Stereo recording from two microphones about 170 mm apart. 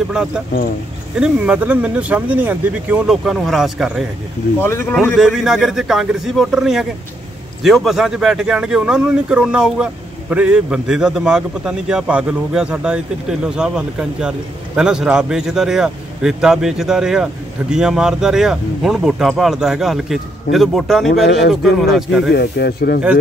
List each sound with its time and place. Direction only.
1.2 s speech: 5° right (ahead or behind)
4.6 s speech: 15° left (ahead or behind)
4.9 s speech: centre (ahead or behind)
22.3 s speech: 75° left (ahead or behind)